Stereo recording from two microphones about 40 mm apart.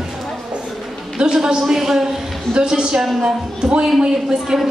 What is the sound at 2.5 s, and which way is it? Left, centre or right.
A woman's voice, right.